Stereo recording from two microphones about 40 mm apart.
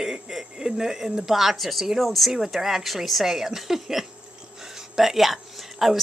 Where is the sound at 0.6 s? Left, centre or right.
Centre.